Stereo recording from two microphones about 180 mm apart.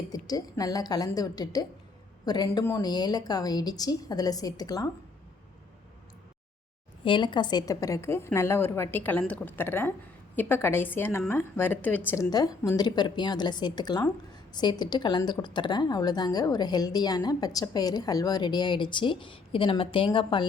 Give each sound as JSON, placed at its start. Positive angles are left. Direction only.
{"t": 0.1, "sound": "a woman's voice", "side_deg": 20}
{"t": 7.0, "sound": "a woman's voice", "side_deg": 25}